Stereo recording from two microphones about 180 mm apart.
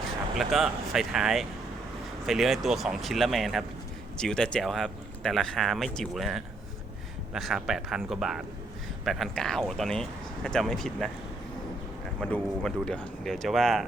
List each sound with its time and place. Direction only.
0.0 s speech: centre (ahead or behind)
12.2 s speech: 5° left (ahead or behind)